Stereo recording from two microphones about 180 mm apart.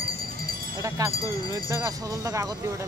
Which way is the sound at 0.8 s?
20° right (ahead or behind).